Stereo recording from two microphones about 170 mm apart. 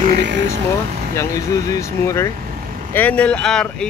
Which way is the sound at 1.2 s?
20° left (ahead or behind).